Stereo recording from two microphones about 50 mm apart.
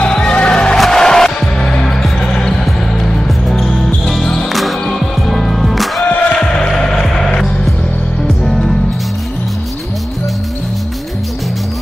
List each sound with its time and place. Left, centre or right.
0.1 s music: left
0.7 s music: centre
2.0 s basketball bounce: centre
6.3 s music: centre